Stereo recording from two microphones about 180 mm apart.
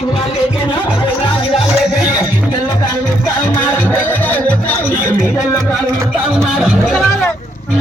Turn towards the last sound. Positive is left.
turn(degrees=0)  # may be behind; listen again after turning